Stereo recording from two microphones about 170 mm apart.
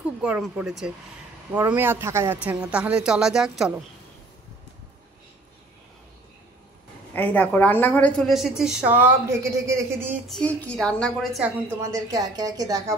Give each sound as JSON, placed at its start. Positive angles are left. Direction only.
{"t": 0.2, "sound": "a woman's voice", "side_deg": -5}
{"t": 7.2, "sound": "a woman's voice", "side_deg": 10}
{"t": 10.2, "sound": "a woman's voice", "side_deg": 5}
{"t": 11.9, "sound": "a woman's voice", "side_deg": -20}